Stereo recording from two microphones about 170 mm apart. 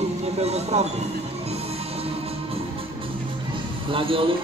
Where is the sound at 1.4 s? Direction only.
35° right (ahead or behind).